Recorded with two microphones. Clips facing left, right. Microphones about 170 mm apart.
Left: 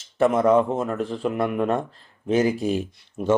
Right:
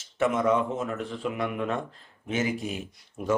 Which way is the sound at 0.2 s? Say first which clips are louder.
Left 6 dB; 35° left (ahead or behind).